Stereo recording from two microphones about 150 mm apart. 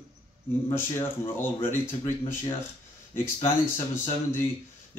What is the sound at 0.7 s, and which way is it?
Speech, 20° left (ahead or behind).